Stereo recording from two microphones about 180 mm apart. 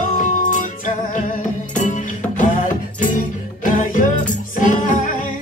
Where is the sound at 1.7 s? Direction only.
45° left (ahead or behind).